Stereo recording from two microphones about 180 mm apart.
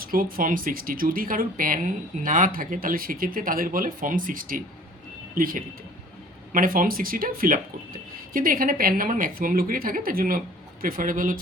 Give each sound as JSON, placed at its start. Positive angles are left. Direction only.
{"t": 0.0, "sound": "speech", "side_deg": -55}